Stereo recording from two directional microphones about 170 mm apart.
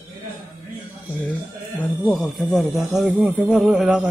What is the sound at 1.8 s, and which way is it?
Speech, 5° left (ahead or behind).